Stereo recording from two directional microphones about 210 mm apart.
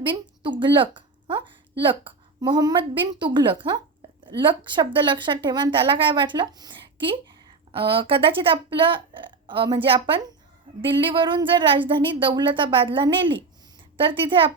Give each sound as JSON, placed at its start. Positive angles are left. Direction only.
{"t": 0.0, "sound": "a woman's voice", "side_deg": -20}